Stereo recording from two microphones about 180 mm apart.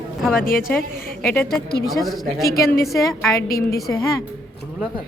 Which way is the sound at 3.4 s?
55° left (ahead or behind).